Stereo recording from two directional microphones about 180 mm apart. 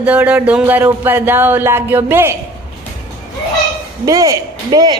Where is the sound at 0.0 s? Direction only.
10° right (ahead or behind).